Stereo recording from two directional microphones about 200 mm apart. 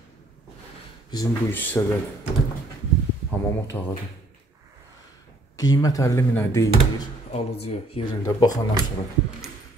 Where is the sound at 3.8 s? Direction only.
10° left (ahead or behind).